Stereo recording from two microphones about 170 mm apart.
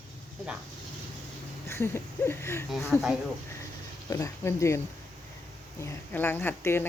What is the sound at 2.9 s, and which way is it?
Speech, 10° left (ahead or behind).